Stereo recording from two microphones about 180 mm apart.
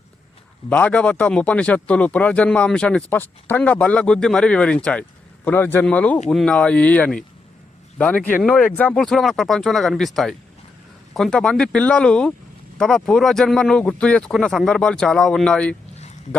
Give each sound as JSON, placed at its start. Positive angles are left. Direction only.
{"t": 0.7, "sound": "speech", "side_deg": 5}